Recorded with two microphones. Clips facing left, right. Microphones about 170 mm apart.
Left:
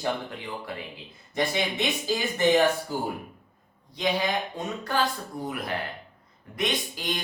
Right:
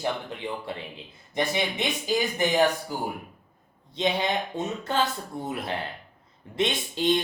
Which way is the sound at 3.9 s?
25° right (ahead or behind).